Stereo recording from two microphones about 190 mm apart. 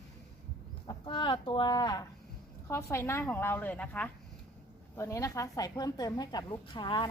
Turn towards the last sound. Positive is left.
turn(degrees=25)  # may be behind; listen again after turning